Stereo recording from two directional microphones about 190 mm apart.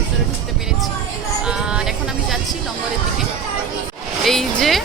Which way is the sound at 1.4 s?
5° right (ahead or behind).